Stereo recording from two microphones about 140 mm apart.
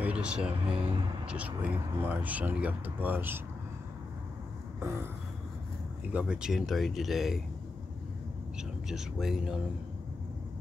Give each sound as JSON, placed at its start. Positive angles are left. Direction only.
{"t": 0.0, "sound": "speech", "side_deg": -10}
{"t": 4.8, "sound": "speech", "side_deg": -15}
{"t": 6.1, "sound": "speech", "side_deg": -5}
{"t": 8.5, "sound": "speech", "side_deg": -5}